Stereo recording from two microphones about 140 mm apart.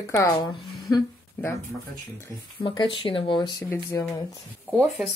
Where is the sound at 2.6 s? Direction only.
35° left (ahead or behind).